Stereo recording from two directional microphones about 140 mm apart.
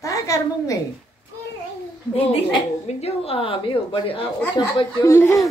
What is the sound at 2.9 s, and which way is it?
A woman's voice, 50° left (ahead or behind).